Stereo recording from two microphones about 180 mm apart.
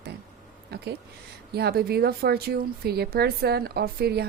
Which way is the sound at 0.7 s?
60° right (ahead or behind).